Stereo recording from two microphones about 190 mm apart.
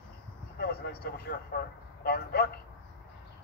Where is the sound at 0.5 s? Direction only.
55° left (ahead or behind).